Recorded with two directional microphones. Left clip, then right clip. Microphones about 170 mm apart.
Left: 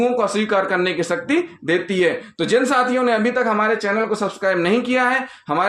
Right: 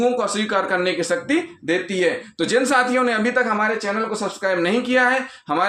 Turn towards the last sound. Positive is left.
turn(degrees=30)  # may be behind; listen again after turning